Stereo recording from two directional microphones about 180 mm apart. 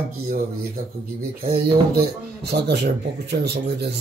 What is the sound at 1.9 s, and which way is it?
Speech, 65° right (ahead or behind).